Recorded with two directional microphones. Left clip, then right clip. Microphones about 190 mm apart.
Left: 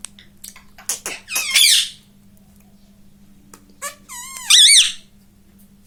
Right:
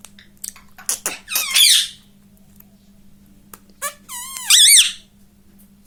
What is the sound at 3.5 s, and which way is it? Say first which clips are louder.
Squeak: right 3 dB; 50° right (ahead or behind).